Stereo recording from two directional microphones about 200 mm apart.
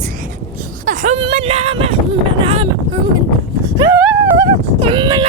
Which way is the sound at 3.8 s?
10° right (ahead or behind).